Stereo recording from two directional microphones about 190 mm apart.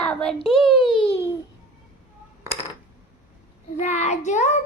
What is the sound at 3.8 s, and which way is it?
Speech, 35° left (ahead or behind).